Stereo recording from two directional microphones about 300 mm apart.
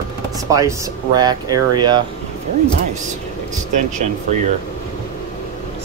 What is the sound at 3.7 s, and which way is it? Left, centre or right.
Speech, right.